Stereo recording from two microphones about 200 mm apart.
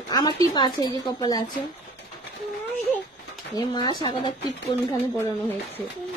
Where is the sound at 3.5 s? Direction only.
20° left (ahead or behind).